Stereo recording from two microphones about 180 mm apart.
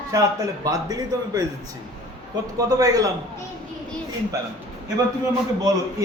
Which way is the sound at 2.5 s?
20° right (ahead or behind).